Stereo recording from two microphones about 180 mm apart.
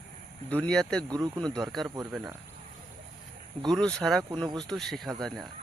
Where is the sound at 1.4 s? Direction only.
5° left (ahead or behind).